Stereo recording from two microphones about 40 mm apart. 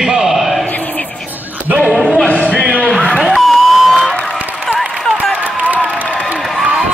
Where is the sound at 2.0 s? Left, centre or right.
Left.